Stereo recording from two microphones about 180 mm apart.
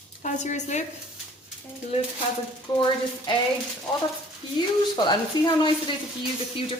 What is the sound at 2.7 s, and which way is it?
Speech, 25° left (ahead or behind).